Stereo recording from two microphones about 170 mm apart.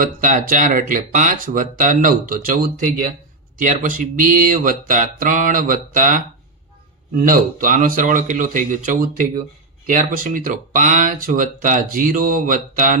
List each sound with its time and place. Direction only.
0.0 s speech: 50° right (ahead or behind)